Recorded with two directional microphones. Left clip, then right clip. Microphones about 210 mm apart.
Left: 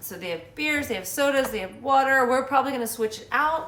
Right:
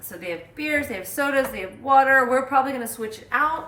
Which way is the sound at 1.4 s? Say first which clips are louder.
Right 1 dB; centre (ahead or behind).